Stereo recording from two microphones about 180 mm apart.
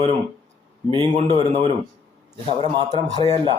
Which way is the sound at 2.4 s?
30° right (ahead or behind).